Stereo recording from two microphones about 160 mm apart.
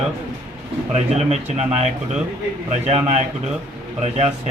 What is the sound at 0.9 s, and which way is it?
Speech, 45° right (ahead or behind).